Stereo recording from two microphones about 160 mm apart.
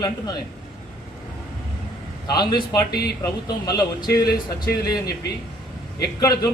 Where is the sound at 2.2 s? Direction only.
25° left (ahead or behind).